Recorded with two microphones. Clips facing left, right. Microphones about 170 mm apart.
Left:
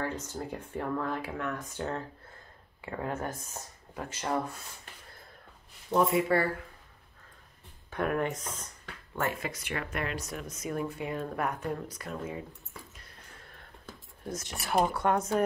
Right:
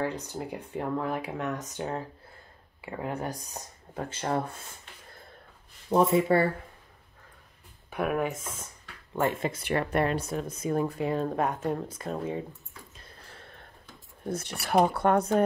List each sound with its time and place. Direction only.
0.2 s speech: 15° right (ahead or behind)
3.9 s speech: 30° right (ahead or behind)
5.9 s speech: 30° right (ahead or behind)
7.9 s speech: 5° right (ahead or behind)
9.1 s speech: 20° right (ahead or behind)
12.9 s a sound: 30° right (ahead or behind)
14.5 s speech: 40° right (ahead or behind)